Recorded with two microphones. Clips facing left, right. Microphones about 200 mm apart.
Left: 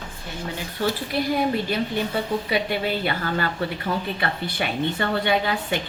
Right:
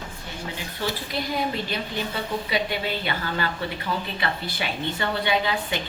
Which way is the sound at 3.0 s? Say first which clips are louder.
Left 3 dB; 45° left (ahead or behind).